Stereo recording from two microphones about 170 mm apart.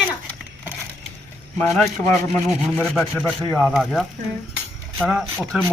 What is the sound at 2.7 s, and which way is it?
Speech, 5° left (ahead or behind).